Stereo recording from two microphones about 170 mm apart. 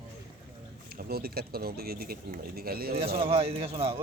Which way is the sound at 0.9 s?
60° right (ahead or behind).